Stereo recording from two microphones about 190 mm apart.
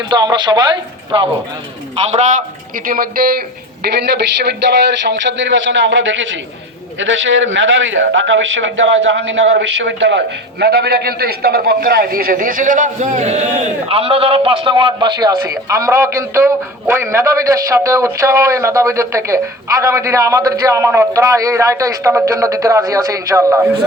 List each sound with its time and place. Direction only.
0.1 s a man's voice: 20° right (ahead or behind)
2.0 s a man's voice: 35° right (ahead or behind); by 23.6 s 15° right (ahead or behind)